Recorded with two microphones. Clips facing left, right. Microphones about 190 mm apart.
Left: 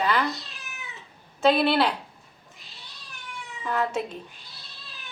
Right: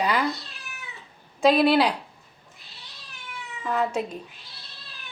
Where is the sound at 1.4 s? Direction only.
10° right (ahead or behind).